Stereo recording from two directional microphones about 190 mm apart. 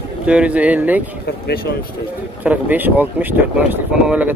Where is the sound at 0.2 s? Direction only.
5° right (ahead or behind).